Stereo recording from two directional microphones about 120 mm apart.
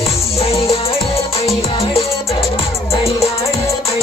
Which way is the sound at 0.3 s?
55° left (ahead or behind).